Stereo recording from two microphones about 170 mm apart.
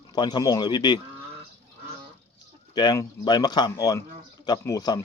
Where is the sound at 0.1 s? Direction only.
25° left (ahead or behind).